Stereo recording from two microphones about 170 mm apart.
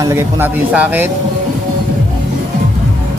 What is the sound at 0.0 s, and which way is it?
Speech, 15° right (ahead or behind).